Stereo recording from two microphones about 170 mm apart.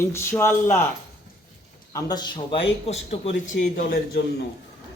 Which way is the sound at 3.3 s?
50° left (ahead or behind).